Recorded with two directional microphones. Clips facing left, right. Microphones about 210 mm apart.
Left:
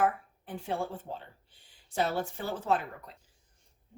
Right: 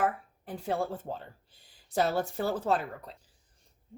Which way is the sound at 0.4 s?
40° right (ahead or behind).